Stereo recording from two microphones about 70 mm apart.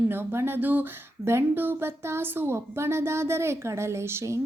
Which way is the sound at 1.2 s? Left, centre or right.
Right.